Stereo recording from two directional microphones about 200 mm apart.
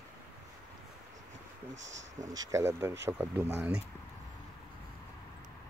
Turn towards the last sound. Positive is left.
turn(degrees=-10)  # may be behind; listen again after turning